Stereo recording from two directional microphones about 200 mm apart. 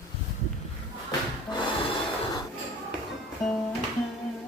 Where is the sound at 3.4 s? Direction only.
Centre (ahead or behind).